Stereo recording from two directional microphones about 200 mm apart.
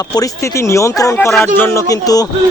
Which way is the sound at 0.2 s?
15° left (ahead or behind).